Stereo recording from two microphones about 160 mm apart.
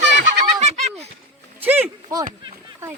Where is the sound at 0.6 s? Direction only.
45° right (ahead or behind).